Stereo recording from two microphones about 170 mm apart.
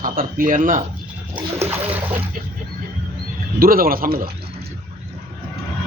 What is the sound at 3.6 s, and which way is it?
Speech, 60° right (ahead or behind).